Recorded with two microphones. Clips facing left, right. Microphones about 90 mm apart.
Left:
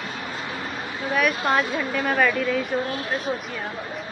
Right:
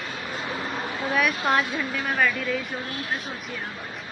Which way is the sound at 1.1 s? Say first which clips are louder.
Left 2 dB; centre (ahead or behind).